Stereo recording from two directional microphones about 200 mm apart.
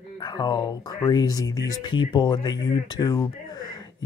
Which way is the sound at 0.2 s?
20° left (ahead or behind).